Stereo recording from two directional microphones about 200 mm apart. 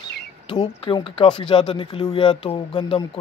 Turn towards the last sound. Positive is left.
turn(degrees=25)  # may be behind; listen again after turning